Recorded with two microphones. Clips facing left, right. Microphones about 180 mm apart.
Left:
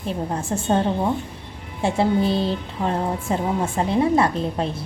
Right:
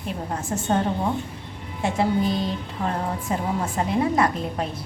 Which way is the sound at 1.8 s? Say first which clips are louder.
Left 3 dB; 30° left (ahead or behind).